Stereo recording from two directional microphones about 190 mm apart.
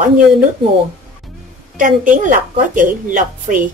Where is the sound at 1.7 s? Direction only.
45° right (ahead or behind).